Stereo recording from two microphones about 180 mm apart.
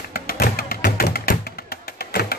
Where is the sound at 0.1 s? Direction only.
55° left (ahead or behind).